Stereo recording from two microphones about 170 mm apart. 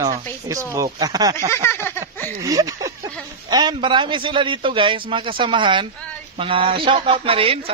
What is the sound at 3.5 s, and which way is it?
A man's voice, 25° right (ahead or behind).